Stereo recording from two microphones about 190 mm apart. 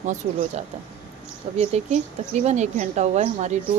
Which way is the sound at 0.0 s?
40° right (ahead or behind).